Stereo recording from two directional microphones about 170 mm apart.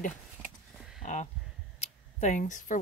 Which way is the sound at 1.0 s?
45° left (ahead or behind).